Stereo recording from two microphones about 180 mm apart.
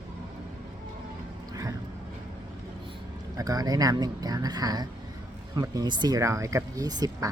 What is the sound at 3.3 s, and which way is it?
Speech, 20° right (ahead or behind).